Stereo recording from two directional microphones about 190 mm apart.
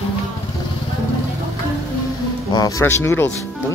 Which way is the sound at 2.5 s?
20° left (ahead or behind).